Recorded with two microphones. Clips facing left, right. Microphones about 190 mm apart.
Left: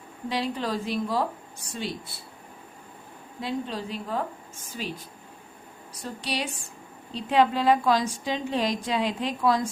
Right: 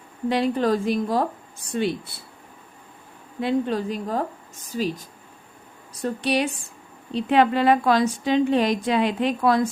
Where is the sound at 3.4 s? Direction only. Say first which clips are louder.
Right 8 dB; 60° right (ahead or behind); by 5.1 s 40° right (ahead or behind).